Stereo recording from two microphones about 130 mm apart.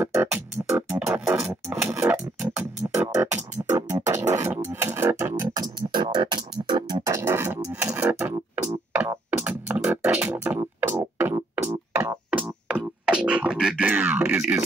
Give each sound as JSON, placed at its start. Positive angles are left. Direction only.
{"t": 0.0, "sound": "music", "side_deg": -15}
{"t": 1.0, "sound": "a sound", "side_deg": -20}
{"t": 1.5, "sound": "music", "side_deg": -15}
{"t": 5.6, "sound": "music", "side_deg": -35}
{"t": 9.4, "sound": "music", "side_deg": -10}